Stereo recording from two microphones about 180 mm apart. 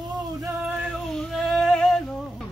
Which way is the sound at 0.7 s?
Centre (ahead or behind).